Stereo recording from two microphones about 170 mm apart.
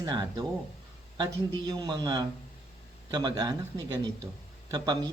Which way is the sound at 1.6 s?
20° right (ahead or behind).